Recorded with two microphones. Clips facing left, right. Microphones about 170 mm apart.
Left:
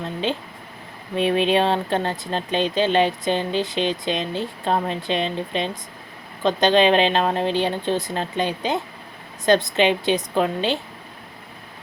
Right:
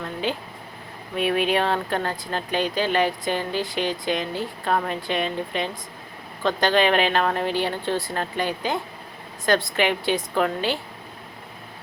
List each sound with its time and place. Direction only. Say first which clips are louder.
0.0 s speech: left 2 dB; 20° left (ahead or behind)